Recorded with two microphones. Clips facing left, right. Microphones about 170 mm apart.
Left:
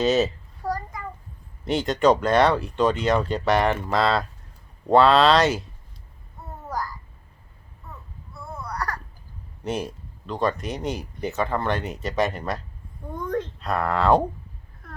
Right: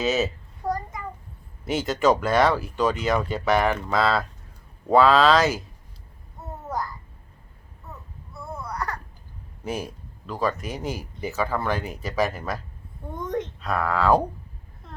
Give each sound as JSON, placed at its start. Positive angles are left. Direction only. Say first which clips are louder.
{"t": 0.0, "sound": "speech", "louder": "left 3 dB", "side_deg": 0}
{"t": 0.6, "sound": "a sound", "louder": "right 1 dB", "side_deg": -20}
{"t": 1.6, "sound": "speech", "louder": "left 2 dB", "side_deg": -5}
{"t": 8.3, "sound": "baby cry", "louder": "right 1 dB", "side_deg": 0}
{"t": 8.7, "sound": "baby cry", "louder": "left 1 dB", "side_deg": -20}
{"t": 9.6, "sound": "speech", "louder": "left 2 dB", "side_deg": -5}
{"t": 13.1, "sound": "a sound", "louder": "left 1 dB", "side_deg": -20}
{"t": 13.6, "sound": "speech", "louder": "even", "side_deg": 0}
{"t": 14.8, "sound": "a sound", "louder": "even", "side_deg": -25}